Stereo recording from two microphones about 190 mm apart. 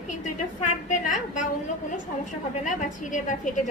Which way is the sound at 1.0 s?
40° left (ahead or behind).